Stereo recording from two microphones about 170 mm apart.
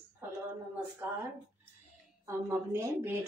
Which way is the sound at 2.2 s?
15° right (ahead or behind).